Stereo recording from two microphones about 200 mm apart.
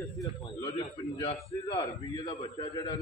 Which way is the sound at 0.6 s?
20° left (ahead or behind).